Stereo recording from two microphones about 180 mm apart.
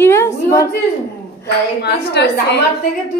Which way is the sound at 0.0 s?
15° left (ahead or behind).